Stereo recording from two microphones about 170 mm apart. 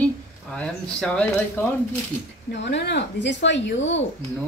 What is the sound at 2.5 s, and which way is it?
Speech, 90° left.